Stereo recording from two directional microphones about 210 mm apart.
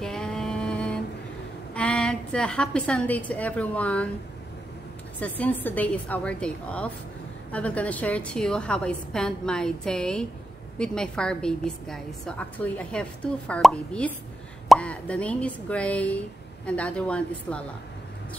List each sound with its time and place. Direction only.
0.0 s a sound: 5° left (ahead or behind)
1.7 s a woman's voice: 5° left (ahead or behind)
5.2 s a woman's voice: 10° left (ahead or behind)